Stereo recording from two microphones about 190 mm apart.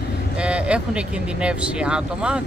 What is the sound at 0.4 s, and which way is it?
Speech, 5° right (ahead or behind).